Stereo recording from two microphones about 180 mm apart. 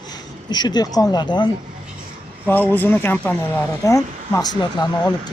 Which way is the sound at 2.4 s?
10° left (ahead or behind).